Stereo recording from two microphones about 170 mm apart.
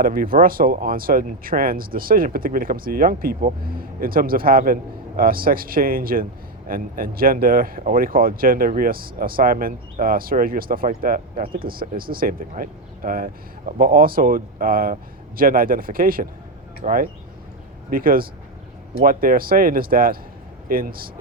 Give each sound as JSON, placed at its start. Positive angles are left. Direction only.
{"t": 0.0, "sound": "speech", "side_deg": -55}